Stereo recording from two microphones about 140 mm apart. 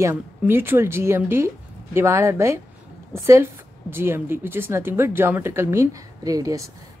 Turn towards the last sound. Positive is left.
turn(degrees=-25)  # may be behind; listen again after turning